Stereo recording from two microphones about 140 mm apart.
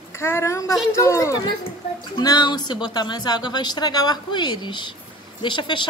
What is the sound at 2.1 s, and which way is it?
Speech, 35° left (ahead or behind).